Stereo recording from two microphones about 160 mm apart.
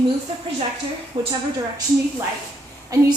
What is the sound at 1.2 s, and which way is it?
Speech, 25° right (ahead or behind).